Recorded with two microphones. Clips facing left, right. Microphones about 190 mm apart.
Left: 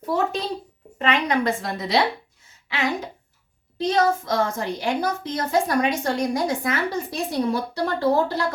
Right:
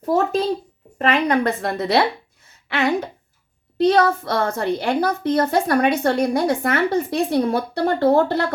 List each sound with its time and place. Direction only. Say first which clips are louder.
0.9 s a child's voice: right 4 dB; 50° right (ahead or behind)